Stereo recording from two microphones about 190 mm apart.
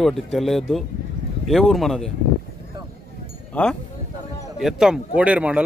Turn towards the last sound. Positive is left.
turn(degrees=-5)  # may be behind; listen again after turning